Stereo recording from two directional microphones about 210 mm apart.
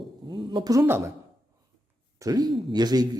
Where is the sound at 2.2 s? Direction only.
20° right (ahead or behind).